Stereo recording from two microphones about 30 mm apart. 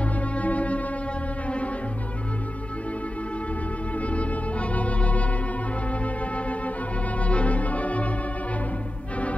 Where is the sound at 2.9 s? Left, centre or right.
Left.